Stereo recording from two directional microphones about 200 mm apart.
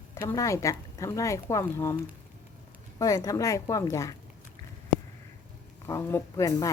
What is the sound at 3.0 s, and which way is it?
Speech, 15° left (ahead or behind).